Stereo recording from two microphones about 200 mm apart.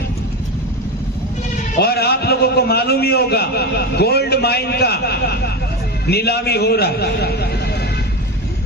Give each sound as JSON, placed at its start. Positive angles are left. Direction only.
{"t": 1.8, "sound": "a man's voice", "side_deg": 55}